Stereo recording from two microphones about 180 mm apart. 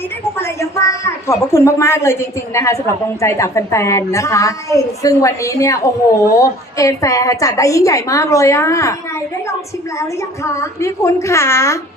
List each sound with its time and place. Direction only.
0.3 s a woman's voice: 15° left (ahead or behind)
10.0 s a woman's voice: 15° left (ahead or behind)